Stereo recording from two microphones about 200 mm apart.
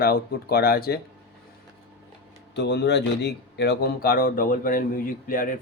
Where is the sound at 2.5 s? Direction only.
55° left (ahead or behind).